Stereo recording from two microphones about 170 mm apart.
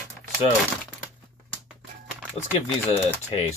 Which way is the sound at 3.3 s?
30° left (ahead or behind).